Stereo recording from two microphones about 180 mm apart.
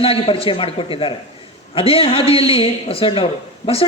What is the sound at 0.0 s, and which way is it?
A man's voice, 30° left (ahead or behind).